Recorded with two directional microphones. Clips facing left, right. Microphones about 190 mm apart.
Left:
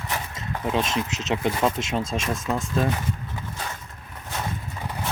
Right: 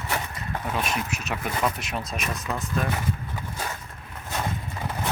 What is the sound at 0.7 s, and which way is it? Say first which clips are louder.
Speech: left 4 dB; 25° left (ahead or behind).